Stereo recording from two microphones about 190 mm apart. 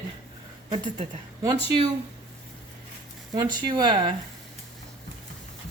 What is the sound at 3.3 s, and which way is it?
Speech, 25° right (ahead or behind).